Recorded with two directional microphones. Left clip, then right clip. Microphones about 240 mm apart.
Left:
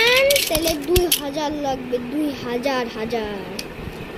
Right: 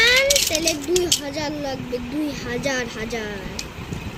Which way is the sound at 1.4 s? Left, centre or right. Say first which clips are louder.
Left 3 dB; centre.